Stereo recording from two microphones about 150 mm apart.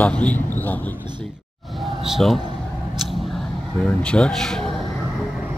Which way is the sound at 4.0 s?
5° left (ahead or behind).